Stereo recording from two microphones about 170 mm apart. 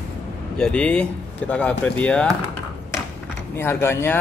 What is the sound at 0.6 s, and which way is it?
A man's voice, 5° left (ahead or behind).